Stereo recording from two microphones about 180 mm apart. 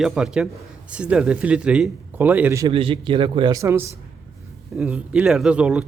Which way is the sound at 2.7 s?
30° right (ahead or behind).